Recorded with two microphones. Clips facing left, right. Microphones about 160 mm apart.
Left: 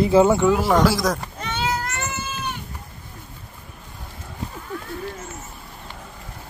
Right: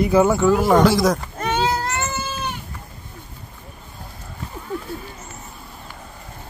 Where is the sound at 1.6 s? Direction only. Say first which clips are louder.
Right 1 dB; 30° right (ahead or behind).